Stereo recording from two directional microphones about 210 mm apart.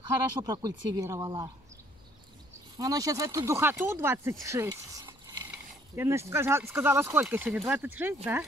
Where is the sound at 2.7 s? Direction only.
15° right (ahead or behind).